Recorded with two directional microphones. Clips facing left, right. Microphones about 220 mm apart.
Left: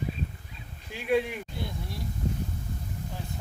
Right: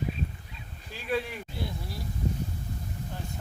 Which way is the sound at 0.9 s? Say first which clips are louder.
Left 5 dB; 15° left (ahead or behind).